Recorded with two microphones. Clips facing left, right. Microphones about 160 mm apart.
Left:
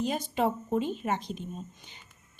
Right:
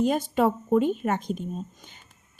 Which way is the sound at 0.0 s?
50° right (ahead or behind).